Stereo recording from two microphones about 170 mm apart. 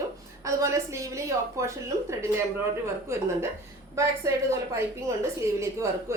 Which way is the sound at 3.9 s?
15° right (ahead or behind).